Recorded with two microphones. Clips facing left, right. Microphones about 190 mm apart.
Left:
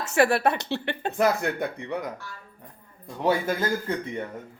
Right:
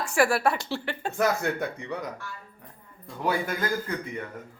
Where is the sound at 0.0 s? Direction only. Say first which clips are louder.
Left 2 dB; 20° left (ahead or behind).